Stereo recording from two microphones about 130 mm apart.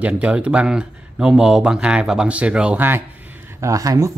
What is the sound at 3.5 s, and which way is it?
Speech, 25° right (ahead or behind).